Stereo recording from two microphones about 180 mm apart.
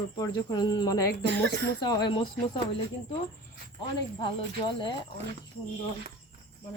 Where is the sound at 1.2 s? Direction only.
70° right (ahead or behind).